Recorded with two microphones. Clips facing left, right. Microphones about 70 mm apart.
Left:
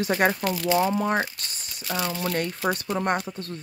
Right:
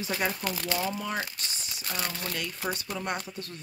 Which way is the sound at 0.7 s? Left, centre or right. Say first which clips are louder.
Left 10 dB; left.